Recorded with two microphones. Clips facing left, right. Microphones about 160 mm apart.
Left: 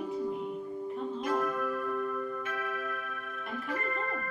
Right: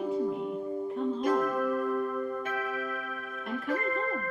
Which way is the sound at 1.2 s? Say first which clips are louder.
Right 3 dB; 35° right (ahead or behind).